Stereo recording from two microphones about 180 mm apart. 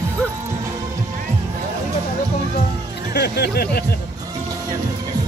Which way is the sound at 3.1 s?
65° left (ahead or behind).